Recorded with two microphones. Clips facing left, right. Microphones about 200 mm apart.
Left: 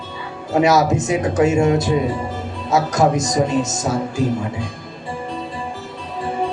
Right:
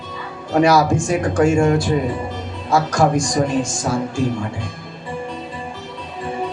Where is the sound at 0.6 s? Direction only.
20° left (ahead or behind).